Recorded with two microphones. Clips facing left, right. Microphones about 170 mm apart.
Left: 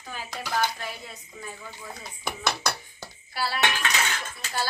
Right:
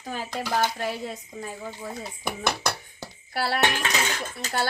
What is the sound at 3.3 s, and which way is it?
Dishes, 65° right (ahead or behind).